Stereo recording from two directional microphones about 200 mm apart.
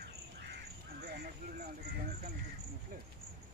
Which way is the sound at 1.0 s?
55° right (ahead or behind).